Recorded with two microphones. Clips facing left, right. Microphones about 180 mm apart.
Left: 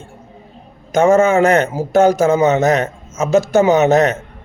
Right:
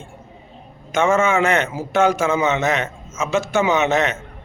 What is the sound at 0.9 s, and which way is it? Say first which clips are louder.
A man's voice: left 6 dB; 40° left (ahead or behind).